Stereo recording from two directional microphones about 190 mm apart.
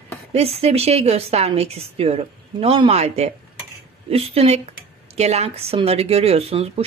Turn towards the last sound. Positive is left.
turn(degrees=-30)  # may be behind; listen again after turning